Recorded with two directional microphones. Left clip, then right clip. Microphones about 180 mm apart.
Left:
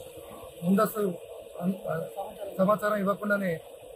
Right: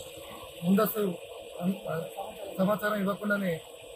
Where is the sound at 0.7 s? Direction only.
10° left (ahead or behind).